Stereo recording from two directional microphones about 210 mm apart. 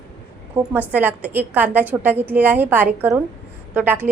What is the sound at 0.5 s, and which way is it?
A woman's voice, 10° right (ahead or behind).